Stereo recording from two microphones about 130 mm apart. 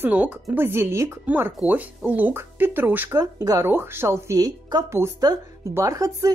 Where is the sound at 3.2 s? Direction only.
25° right (ahead or behind).